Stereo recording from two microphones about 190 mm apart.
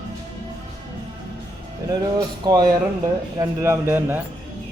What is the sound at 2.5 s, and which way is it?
Speech, 20° right (ahead or behind).